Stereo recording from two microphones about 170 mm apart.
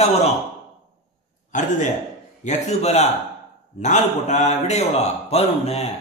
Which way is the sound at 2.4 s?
40° left (ahead or behind).